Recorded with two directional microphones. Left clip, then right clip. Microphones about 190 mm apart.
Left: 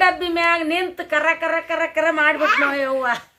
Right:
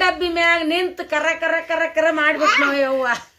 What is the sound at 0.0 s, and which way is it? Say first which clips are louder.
Speech: even; 10° right (ahead or behind).